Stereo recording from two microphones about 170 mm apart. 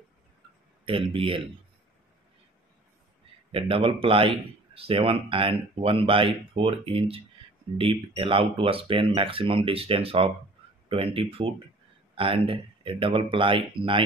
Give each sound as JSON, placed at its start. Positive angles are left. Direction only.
{"t": 0.8, "sound": "speech", "side_deg": -30}
{"t": 3.5, "sound": "speech", "side_deg": -30}